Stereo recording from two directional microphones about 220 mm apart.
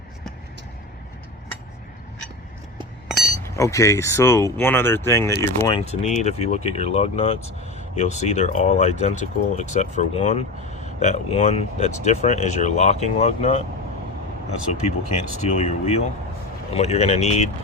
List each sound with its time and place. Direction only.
3.4 s speech: 15° left (ahead or behind); by 13.7 s 30° left (ahead or behind)
14.8 s speech: 30° left (ahead or behind)